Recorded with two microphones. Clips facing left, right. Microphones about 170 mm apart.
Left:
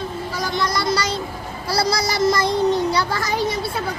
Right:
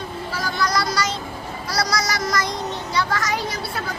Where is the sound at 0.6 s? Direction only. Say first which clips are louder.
Left 1 dB; 25° left (ahead or behind).